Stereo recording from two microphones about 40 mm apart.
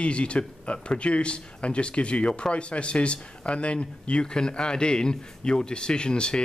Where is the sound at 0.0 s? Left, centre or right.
Left.